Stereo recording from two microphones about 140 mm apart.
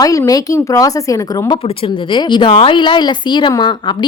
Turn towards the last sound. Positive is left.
turn(degrees=35)  # may be behind; listen again after turning